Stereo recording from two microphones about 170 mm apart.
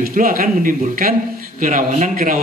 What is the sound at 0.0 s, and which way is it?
A man's voice, 55° right (ahead or behind).